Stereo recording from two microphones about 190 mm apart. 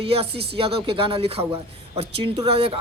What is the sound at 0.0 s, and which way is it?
Speech, 30° right (ahead or behind).